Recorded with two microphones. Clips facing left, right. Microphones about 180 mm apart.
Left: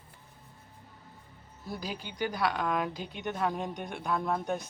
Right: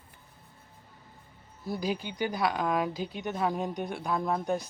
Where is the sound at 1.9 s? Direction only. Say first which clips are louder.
Right 7 dB; 45° right (ahead or behind).